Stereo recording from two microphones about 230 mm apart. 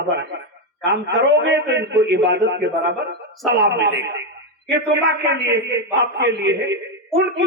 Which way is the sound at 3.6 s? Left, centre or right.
Right.